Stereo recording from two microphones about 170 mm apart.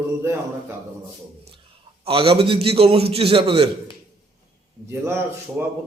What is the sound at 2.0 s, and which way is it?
A man's voice, 35° right (ahead or behind).